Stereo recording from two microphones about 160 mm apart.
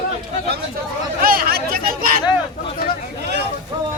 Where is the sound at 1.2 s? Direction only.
65° right (ahead or behind).